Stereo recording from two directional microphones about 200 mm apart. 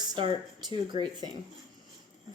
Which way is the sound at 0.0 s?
20° right (ahead or behind).